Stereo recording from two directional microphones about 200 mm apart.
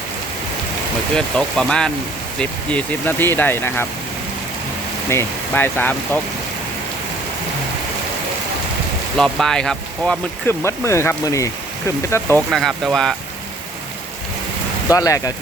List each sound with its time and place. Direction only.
1.1 s speech: 5° left (ahead or behind)
5.0 s speech: 10° left (ahead or behind)
9.1 s speech: 5° left (ahead or behind)
12.5 s speech: centre (ahead or behind)
14.8 s speech: 15° left (ahead or behind)